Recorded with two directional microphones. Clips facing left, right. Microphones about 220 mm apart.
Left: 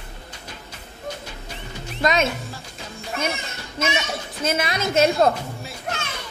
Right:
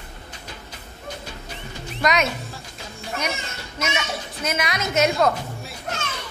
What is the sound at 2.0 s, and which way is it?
Speech, 25° left (ahead or behind).